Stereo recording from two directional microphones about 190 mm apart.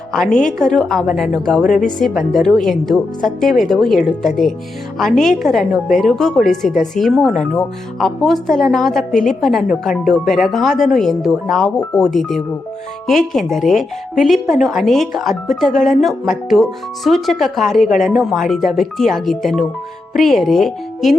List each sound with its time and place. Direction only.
0.6 s speech: centre (ahead or behind)
1.6 s speech: 40° left (ahead or behind)
2.0 s speech: centre (ahead or behind)